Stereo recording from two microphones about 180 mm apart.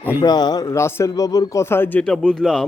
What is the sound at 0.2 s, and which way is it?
A man's voice, 20° left (ahead or behind).